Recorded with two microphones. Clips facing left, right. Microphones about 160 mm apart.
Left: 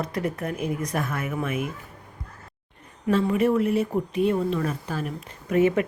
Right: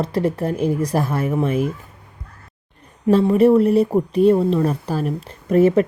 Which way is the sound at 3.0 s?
35° right (ahead or behind).